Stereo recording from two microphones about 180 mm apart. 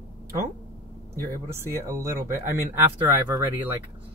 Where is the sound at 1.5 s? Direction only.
15° right (ahead or behind).